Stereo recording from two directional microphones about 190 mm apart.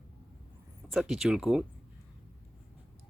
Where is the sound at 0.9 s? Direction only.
Centre (ahead or behind).